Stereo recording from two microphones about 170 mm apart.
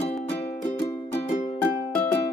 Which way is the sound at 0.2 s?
35° left (ahead or behind).